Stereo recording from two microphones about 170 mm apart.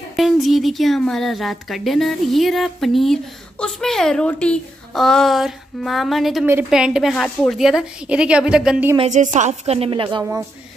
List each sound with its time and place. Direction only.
0.1 s speech: centre (ahead or behind)
8.9 s a woman's voice: 40° right (ahead or behind)